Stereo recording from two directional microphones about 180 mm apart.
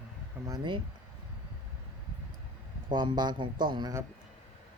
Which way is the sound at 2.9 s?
25° right (ahead or behind).